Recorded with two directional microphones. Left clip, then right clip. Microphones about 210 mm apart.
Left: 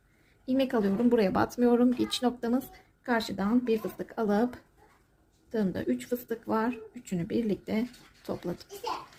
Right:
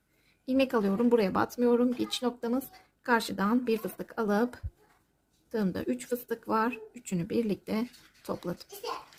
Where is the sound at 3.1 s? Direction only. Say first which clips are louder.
Right 2 dB; 20° right (ahead or behind).